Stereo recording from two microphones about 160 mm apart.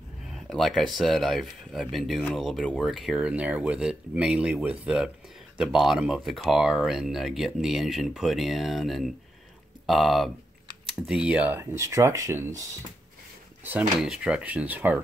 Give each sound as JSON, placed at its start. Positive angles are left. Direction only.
{"t": 0.3, "sound": "speech", "side_deg": 0}
{"t": 13.7, "sound": "speech", "side_deg": -5}